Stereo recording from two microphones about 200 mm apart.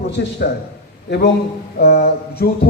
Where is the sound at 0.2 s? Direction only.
55° left (ahead or behind).